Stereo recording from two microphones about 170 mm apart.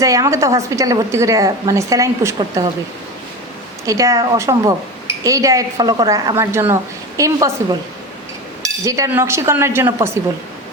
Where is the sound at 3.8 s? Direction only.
20° right (ahead or behind).